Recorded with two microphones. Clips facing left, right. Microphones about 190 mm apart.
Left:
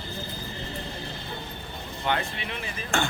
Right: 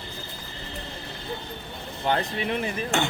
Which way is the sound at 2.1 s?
40° right (ahead or behind).